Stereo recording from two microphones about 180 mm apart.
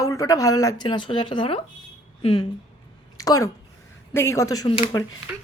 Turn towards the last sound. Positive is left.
turn(degrees=20)  # may be behind; listen again after turning